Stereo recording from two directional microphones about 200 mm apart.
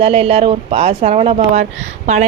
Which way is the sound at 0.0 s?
30° right (ahead or behind).